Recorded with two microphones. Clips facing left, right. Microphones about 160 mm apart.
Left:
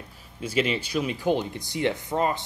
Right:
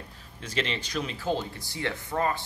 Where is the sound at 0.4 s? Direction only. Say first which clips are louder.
Left 6 dB; 10° left (ahead or behind).